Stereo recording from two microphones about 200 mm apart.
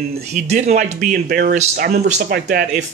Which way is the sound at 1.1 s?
50° right (ahead or behind).